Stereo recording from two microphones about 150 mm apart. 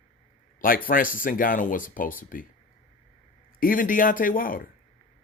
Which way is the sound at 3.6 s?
70° left (ahead or behind).